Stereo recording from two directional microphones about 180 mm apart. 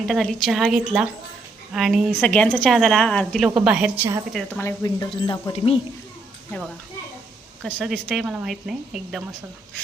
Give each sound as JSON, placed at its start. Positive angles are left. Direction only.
{"t": 0.1, "sound": "a woman's voice", "side_deg": 0}
{"t": 4.3, "sound": "a woman's voice", "side_deg": 0}
{"t": 4.6, "sound": "speech", "side_deg": 20}
{"t": 7.6, "sound": "a woman's voice", "side_deg": 0}